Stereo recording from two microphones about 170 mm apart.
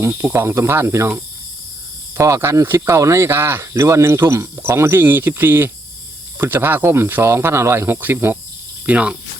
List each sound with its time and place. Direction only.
0.0 s speech: 15° right (ahead or behind)